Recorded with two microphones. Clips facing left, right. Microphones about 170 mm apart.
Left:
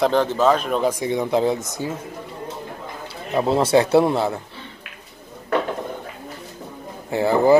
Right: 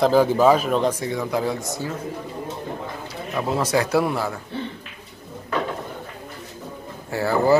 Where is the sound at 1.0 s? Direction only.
20° left (ahead or behind).